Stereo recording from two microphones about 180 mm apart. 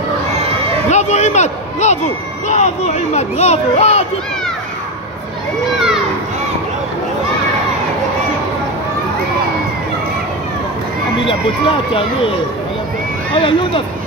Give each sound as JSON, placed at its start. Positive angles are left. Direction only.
{"t": 0.8, "sound": "a sound", "side_deg": 40}
{"t": 2.4, "sound": "a child's voice", "side_deg": 40}
{"t": 11.2, "sound": "speech", "side_deg": 30}